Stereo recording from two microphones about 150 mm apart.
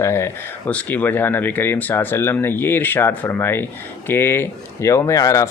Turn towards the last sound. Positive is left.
turn(degrees=20)  # may be behind; listen again after turning